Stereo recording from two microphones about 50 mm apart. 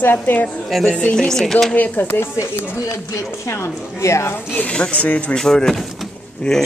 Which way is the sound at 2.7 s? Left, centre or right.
Left.